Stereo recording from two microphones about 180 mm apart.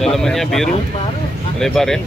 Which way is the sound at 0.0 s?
Centre (ahead or behind).